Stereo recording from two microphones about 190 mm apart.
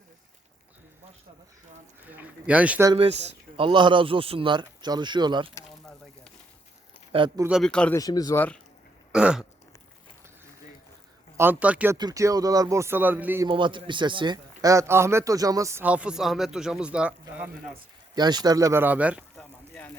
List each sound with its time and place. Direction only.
2.0 s a man's voice: 10° right (ahead or behind)
2.9 s speech: 35° right (ahead or behind)
7.1 s speech: 25° right (ahead or behind)
7.4 s speech: centre (ahead or behind)
7.9 s speech: 20° left (ahead or behind)
9.1 s speech: 5° right (ahead or behind)
11.3 s a man's voice: 10° right (ahead or behind)
11.9 s a man's voice: 20° right (ahead or behind)
13.5 s a man's voice: 25° right (ahead or behind); by 17.5 s 5° right (ahead or behind)
18.1 s a man's voice: 20° right (ahead or behind)
19.4 s a sound: 5° left (ahead or behind)